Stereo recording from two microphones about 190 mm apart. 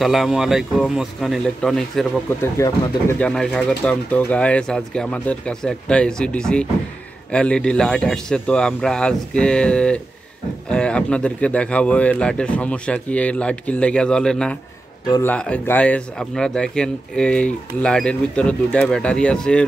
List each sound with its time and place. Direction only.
0.0 s speech: centre (ahead or behind)
2.4 s speech: 15° left (ahead or behind)
3.2 s speech: 5° left (ahead or behind)
15.0 s speech: 20° left (ahead or behind)
15.3 s speech: 5° left (ahead or behind)